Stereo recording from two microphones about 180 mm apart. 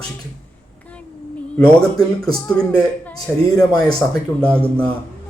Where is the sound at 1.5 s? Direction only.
5° left (ahead or behind).